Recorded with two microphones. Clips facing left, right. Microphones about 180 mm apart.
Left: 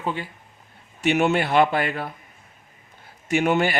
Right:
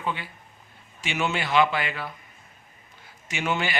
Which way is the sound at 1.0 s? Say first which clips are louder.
Left 8 dB; 55° left (ahead or behind).